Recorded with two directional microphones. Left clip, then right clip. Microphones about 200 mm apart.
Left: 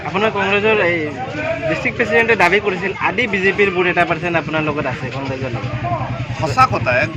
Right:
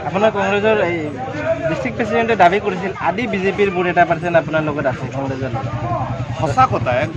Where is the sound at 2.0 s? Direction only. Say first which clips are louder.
Even; 40° right (ahead or behind).